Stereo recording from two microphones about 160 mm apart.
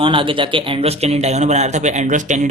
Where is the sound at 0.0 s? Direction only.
35° right (ahead or behind).